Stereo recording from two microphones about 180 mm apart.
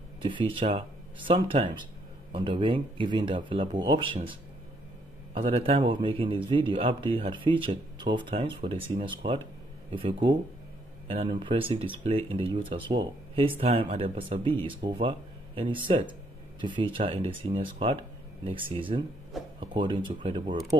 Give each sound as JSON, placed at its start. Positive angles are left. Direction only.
{"t": 0.2, "sound": "speech", "side_deg": -25}